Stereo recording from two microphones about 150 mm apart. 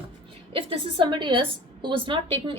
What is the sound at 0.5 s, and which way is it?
A woman's voice, 35° right (ahead or behind).